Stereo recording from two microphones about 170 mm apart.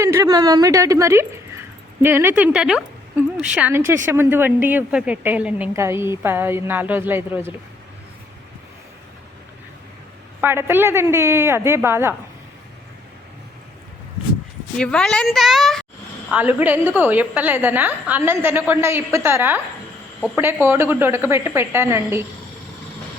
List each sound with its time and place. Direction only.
0.0 s a woman's voice: 15° right (ahead or behind)
10.4 s speech: 15° right (ahead or behind)
14.8 s a woman's voice: 5° left (ahead or behind)
16.3 s speech: 10° right (ahead or behind)